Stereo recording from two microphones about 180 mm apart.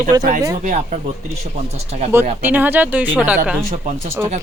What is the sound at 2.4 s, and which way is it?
Speech, 10° right (ahead or behind).